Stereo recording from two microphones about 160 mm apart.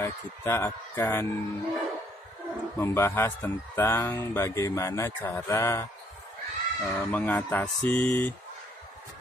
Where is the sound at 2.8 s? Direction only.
15° left (ahead or behind).